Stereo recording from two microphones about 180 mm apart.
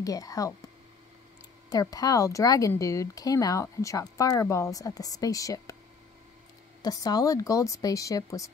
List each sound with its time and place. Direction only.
0.0 s speech: 20° left (ahead or behind)
1.7 s speech: 20° left (ahead or behind)
6.8 s speech: 20° left (ahead or behind)